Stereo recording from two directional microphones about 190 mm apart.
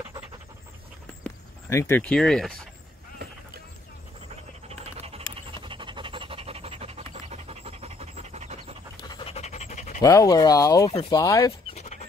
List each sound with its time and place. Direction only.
1.2 s speech: 15° left (ahead or behind)
4.6 s pant: 30° right (ahead or behind)
9.0 s pant: 20° left (ahead or behind)
9.3 s pant: 35° left (ahead or behind)
10.0 s speech: 20° left (ahead or behind)
10.9 s speech: 30° left (ahead or behind)
11.1 s speech: 15° left (ahead or behind)
11.8 s a sound: 40° left (ahead or behind)